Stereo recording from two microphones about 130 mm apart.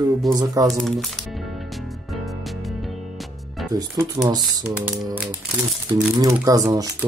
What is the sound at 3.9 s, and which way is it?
Speech, 25° right (ahead or behind).